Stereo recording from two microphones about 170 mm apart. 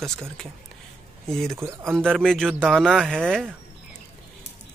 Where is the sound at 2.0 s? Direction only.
5° left (ahead or behind).